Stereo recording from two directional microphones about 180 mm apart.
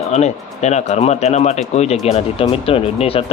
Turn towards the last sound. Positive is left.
turn(degrees=30)  # may be behind; listen again after turning